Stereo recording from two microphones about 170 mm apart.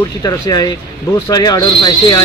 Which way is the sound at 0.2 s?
20° left (ahead or behind).